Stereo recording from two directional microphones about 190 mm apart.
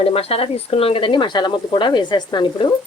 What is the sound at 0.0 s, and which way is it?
Speech, 30° left (ahead or behind).